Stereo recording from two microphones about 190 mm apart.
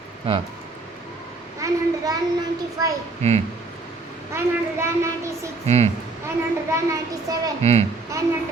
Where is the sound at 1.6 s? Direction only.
20° right (ahead or behind).